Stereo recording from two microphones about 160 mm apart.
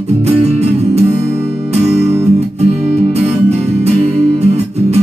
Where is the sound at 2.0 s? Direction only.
40° right (ahead or behind).